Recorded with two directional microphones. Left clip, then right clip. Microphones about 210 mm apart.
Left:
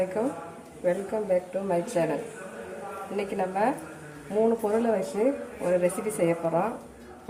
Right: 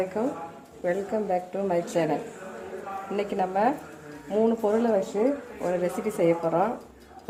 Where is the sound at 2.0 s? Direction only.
35° right (ahead or behind).